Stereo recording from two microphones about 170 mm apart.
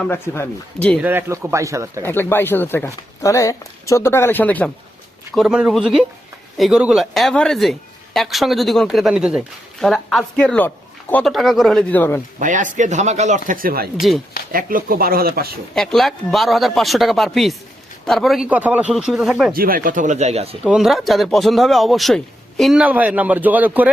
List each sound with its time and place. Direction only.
0.0 s speech: 10° left (ahead or behind)
1.0 s speech: 10° right (ahead or behind)
2.0 s speech: 10° left (ahead or behind)
5.3 s speech: centre (ahead or behind)
12.4 s speech: 50° right (ahead or behind)
15.7 s speech: centre (ahead or behind)
19.5 s speech: 55° right (ahead or behind); by 20.6 s 35° right (ahead or behind)
20.7 s speech: centre (ahead or behind)